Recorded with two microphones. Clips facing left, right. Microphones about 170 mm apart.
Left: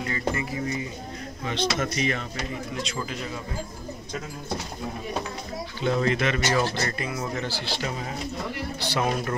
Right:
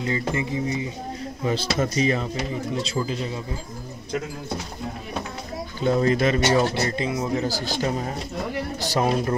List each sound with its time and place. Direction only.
0.0 s speech: 25° right (ahead or behind)
1.4 s speech: 35° right (ahead or behind)
5.8 s speech: 40° right (ahead or behind); by 7.2 s 20° right (ahead or behind)
7.3 s speech: 40° right (ahead or behind)